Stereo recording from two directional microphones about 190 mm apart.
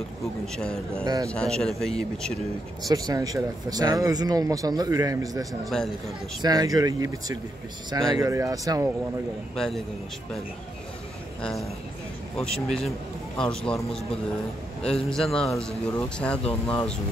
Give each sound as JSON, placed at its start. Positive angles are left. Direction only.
{"t": 0.6, "sound": "speech", "side_deg": 5}
{"t": 1.0, "sound": "speech", "side_deg": -20}
{"t": 1.3, "sound": "speech", "side_deg": 5}
{"t": 2.8, "sound": "speech", "side_deg": -20}
{"t": 5.5, "sound": "speech", "side_deg": 0}
{"t": 6.4, "sound": "speech", "side_deg": -20}
{"t": 9.6, "sound": "speech", "side_deg": 0}
{"t": 12.4, "sound": "speech", "side_deg": 5}
{"t": 14.8, "sound": "speech", "side_deg": 5}